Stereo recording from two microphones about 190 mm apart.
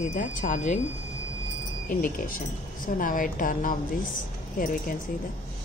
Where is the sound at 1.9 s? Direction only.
45° left (ahead or behind).